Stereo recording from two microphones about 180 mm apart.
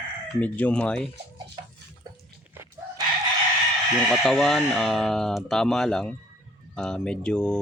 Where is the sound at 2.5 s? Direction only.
15° right (ahead or behind).